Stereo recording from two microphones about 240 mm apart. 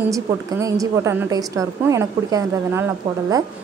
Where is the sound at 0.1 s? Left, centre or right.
Centre.